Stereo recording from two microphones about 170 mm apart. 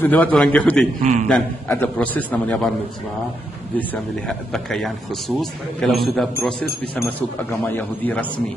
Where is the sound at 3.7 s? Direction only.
5° left (ahead or behind).